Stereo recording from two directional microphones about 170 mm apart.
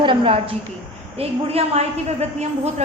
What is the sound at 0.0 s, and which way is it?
A woman's voice, 30° right (ahead or behind).